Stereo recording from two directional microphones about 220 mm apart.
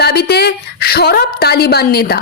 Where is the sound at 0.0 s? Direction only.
45° left (ahead or behind).